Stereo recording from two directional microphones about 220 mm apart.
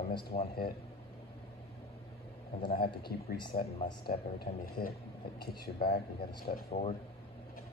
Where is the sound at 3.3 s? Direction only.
25° left (ahead or behind).